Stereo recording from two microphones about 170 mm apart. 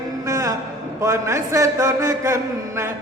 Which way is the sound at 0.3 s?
20° right (ahead or behind).